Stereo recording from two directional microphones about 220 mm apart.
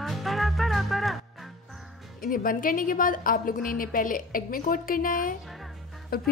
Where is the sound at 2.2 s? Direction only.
40° left (ahead or behind).